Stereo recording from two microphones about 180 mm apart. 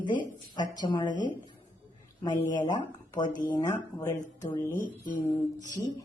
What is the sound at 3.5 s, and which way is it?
Speech, 15° left (ahead or behind).